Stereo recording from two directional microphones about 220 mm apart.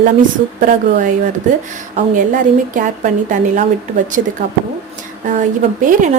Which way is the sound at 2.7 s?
35° right (ahead or behind).